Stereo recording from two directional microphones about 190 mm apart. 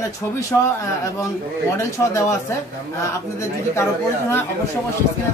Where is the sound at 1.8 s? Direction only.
15° left (ahead or behind).